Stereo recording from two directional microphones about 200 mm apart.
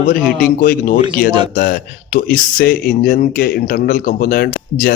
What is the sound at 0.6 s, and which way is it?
Speech, 45° left (ahead or behind).